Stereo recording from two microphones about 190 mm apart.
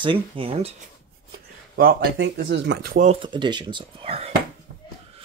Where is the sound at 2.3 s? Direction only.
65° right (ahead or behind).